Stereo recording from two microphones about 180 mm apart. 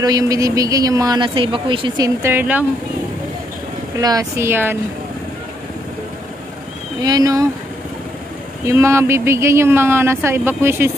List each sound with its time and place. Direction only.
0.0 s speech: 20° right (ahead or behind)
4.0 s speech: 20° right (ahead or behind)
7.0 s speech: 20° right (ahead or behind)
8.6 s speech: 15° right (ahead or behind)